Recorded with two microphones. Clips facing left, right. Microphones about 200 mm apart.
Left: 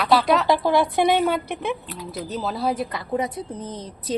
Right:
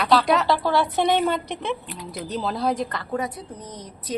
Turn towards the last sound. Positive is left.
turn(degrees=30)  # may be behind; listen again after turning